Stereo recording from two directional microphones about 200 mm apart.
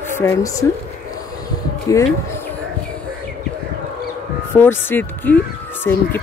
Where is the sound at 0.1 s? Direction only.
15° left (ahead or behind).